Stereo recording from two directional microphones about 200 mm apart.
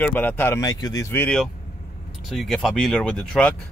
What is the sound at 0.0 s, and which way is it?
Speech, 10° left (ahead or behind).